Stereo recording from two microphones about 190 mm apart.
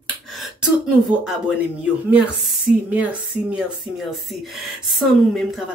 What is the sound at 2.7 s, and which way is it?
A woman's voice, 5° right (ahead or behind).